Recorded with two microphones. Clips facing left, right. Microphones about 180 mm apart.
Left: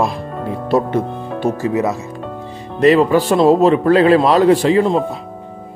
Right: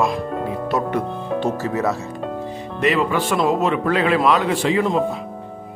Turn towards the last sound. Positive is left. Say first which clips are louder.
# left 7 dB
turn(degrees=35)  # may be behind; listen again after turning